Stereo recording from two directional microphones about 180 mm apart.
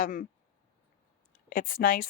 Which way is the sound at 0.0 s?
50° left (ahead or behind).